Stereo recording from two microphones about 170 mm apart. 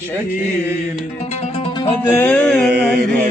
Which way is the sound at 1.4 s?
35° left (ahead or behind).